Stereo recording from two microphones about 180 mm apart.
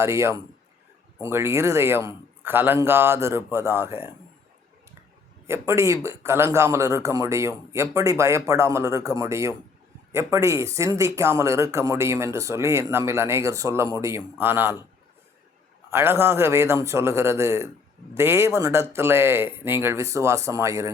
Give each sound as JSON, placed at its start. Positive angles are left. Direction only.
{"t": 0.0, "sound": "a man's voice", "side_deg": -15}
{"t": 5.5, "sound": "a man's voice", "side_deg": -15}
{"t": 15.9, "sound": "a man's voice", "side_deg": -15}